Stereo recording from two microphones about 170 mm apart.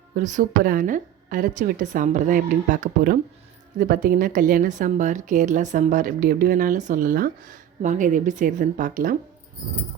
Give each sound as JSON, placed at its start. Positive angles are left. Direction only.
{"t": 0.2, "sound": "speech", "side_deg": -50}